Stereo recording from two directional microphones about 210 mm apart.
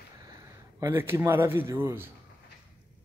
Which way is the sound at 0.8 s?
10° right (ahead or behind).